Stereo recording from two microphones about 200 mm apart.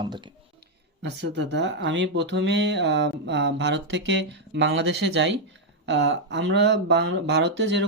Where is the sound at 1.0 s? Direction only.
60° right (ahead or behind).